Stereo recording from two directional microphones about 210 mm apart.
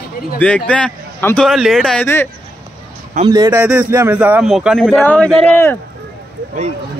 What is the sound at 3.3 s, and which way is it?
A man's voice, 20° right (ahead or behind).